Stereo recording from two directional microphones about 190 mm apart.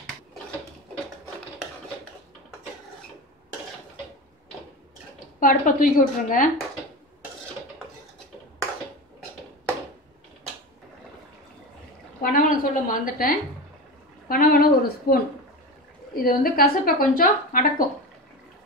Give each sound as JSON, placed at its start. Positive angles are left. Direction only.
{"t": 5.4, "sound": "a woman's voice", "side_deg": 45}
{"t": 12.2, "sound": "a woman's voice", "side_deg": 50}
{"t": 16.2, "sound": "a woman's voice", "side_deg": 50}